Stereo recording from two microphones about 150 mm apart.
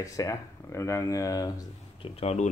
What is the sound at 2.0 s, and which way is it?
Speech, 45° left (ahead or behind).